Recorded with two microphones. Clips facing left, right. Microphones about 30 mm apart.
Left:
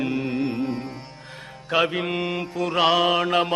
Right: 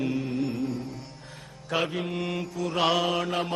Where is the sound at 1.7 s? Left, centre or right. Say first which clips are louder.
Left 6 dB; left.